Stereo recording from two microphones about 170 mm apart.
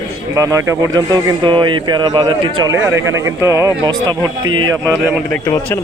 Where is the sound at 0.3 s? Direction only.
15° right (ahead or behind).